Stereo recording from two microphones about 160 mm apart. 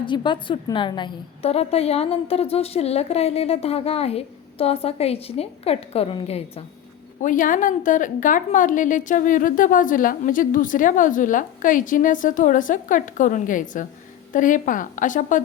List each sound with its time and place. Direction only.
0.0 s a woman's voice: 30° left (ahead or behind)
7.2 s a woman's voice: 55° left (ahead or behind)